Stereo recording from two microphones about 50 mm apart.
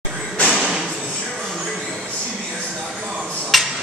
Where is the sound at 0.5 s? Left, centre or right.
Centre.